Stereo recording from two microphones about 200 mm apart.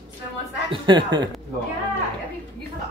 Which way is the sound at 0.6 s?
25° right (ahead or behind).